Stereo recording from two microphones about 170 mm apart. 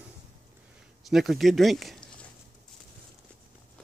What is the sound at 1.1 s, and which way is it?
Speech, centre (ahead or behind).